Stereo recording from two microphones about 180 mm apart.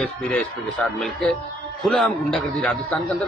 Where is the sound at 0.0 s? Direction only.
5° left (ahead or behind).